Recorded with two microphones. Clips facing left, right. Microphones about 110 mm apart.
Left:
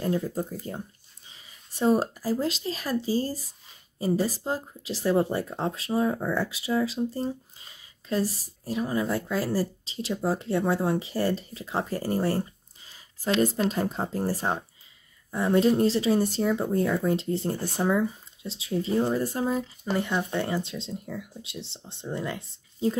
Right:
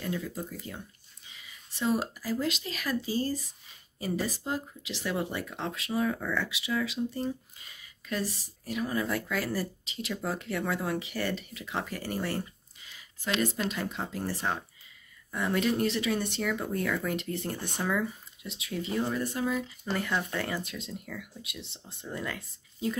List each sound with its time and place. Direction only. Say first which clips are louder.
0.0 s speech: left 7 dB; 40° left (ahead or behind)
19.8 s speech: left 4 dB; 20° left (ahead or behind)